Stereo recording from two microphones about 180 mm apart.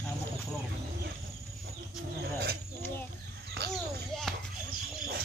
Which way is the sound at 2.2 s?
60° right (ahead or behind).